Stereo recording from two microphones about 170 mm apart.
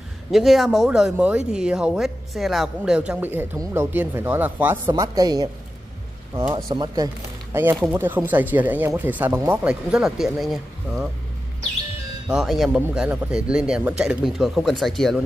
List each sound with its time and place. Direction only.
0.3 s a woman's voice: centre (ahead or behind); by 5.5 s 20° right (ahead or behind)
6.5 s speech: 25° right (ahead or behind)
7.5 s a woman's voice: 15° right (ahead or behind)
12.3 s speech: centre (ahead or behind)